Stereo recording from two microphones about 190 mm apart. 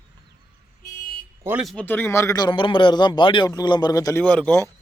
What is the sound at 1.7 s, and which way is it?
Speech, 5° left (ahead or behind).